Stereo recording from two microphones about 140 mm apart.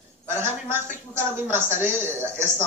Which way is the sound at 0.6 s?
15° right (ahead or behind).